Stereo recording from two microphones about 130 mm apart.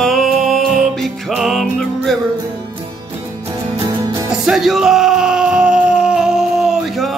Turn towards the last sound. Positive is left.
turn(degrees=0)  # may be behind; listen again after turning